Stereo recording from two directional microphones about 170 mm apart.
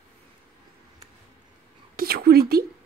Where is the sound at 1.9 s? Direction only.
65° right (ahead or behind).